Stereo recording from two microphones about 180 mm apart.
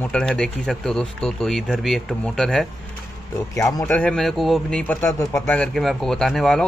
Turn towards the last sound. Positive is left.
turn(degrees=5)  # may be behind; listen again after turning